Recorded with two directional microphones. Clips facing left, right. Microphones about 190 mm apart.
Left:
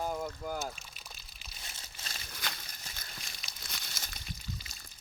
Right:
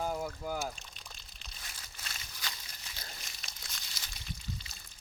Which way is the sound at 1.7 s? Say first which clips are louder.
Left 1 dB; 25° left (ahead or behind).